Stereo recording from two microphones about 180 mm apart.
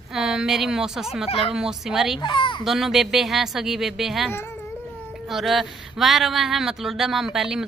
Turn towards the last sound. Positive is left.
turn(degrees=0)  # may be behind; listen again after turning